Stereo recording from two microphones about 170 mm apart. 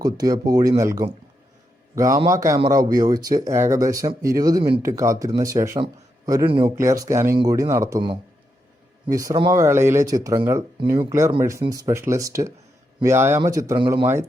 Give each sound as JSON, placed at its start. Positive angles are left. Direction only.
{"t": 0.0, "sound": "a man's voice", "side_deg": -20}
{"t": 11.6, "sound": "speech", "side_deg": -20}